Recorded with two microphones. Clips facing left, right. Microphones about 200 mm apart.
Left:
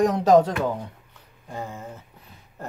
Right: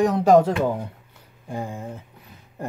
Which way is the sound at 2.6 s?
15° right (ahead or behind).